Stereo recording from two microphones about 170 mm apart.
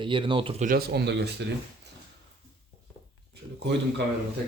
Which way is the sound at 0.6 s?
70° right (ahead or behind).